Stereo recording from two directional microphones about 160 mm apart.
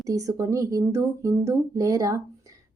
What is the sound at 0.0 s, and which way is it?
Speech, 20° right (ahead or behind).